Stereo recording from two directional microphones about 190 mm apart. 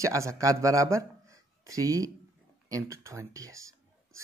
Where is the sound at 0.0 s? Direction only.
15° right (ahead or behind).